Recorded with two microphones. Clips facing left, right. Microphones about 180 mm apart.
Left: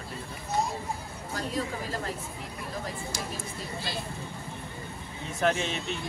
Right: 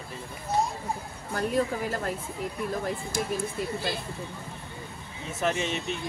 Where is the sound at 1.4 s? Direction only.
55° right (ahead or behind).